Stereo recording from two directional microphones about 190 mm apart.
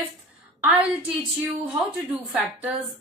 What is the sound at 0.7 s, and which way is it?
Speech, 10° right (ahead or behind).